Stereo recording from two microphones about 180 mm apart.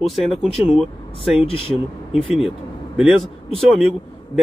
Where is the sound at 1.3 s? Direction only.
30° left (ahead or behind).